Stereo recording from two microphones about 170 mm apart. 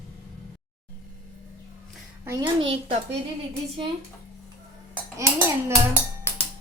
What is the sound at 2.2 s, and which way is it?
Speech, 25° right (ahead or behind).